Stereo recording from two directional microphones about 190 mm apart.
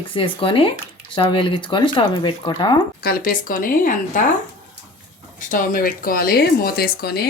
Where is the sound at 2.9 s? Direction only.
50° left (ahead or behind).